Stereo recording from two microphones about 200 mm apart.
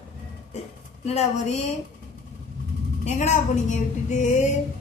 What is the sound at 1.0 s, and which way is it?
Speech, 35° left (ahead or behind).